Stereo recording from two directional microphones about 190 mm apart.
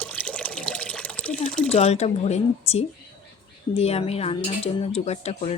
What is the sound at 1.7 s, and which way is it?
A woman's voice, 35° left (ahead or behind).